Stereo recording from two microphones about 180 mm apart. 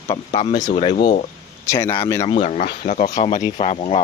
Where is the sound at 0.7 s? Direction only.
35° left (ahead or behind).